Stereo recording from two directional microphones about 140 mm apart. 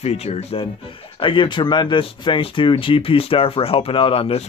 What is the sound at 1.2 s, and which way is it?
Speech, 35° left (ahead or behind).